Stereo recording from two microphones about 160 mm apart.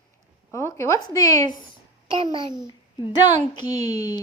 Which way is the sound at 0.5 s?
15° left (ahead or behind).